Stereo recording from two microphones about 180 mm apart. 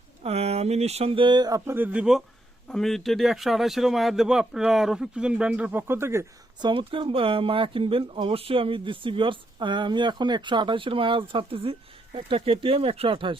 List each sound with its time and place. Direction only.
0.2 s speech: 35° right (ahead or behind); by 6.7 s 15° right (ahead or behind)
6.7 s speech: 30° right (ahead or behind)